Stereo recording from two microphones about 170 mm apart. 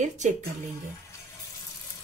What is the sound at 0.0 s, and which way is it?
Speech, 45° right (ahead or behind).